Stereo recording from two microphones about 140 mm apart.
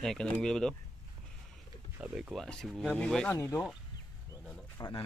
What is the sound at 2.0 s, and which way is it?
Speech, 5° right (ahead or behind).